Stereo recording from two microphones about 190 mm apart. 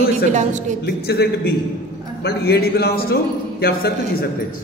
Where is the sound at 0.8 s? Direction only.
55° left (ahead or behind).